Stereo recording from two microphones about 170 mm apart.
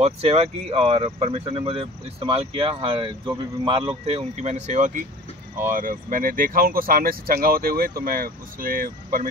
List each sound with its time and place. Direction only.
0.0 s speech: 35° right (ahead or behind); by 9.3 s 55° right (ahead or behind)